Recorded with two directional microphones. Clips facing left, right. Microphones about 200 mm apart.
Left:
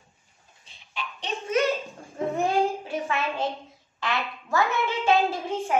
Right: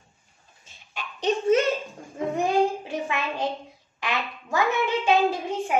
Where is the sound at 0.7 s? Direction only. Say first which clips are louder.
Left 1 dB; 45° right (ahead or behind).